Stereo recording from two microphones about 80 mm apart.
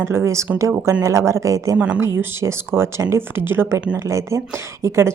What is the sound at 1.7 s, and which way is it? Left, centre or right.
Speech, centre.